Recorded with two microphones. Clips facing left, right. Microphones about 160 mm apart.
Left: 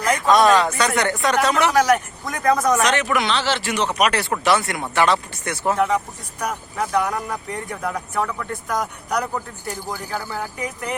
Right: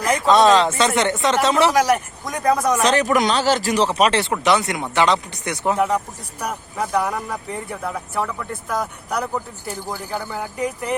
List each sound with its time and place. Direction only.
0.1 s speech: 25° right (ahead or behind)
1.7 s speech: 10° right (ahead or behind)
2.8 s speech: 35° right (ahead or behind)
3.9 s speech: 30° right (ahead or behind)
6.4 s speech: 5° right (ahead or behind)